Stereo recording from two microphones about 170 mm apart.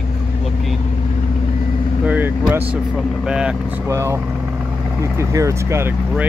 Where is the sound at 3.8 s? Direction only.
15° right (ahead or behind).